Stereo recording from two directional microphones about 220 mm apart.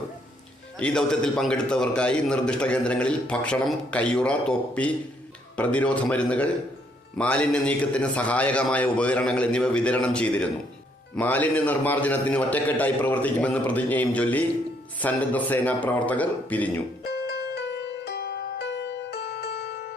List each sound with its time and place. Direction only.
0.8 s a man's voice: 5° left (ahead or behind)
17.0 s music: 45° left (ahead or behind)